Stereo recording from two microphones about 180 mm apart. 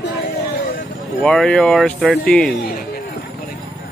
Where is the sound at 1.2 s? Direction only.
5° left (ahead or behind).